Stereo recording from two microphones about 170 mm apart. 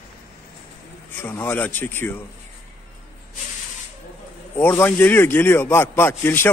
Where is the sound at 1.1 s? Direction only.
10° left (ahead or behind).